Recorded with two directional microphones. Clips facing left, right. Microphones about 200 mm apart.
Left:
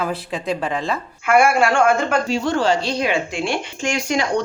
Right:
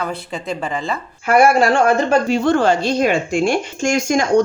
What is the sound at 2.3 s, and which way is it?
Speech, 55° right (ahead or behind).